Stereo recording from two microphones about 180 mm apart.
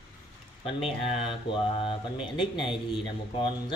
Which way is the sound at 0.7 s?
30° left (ahead or behind).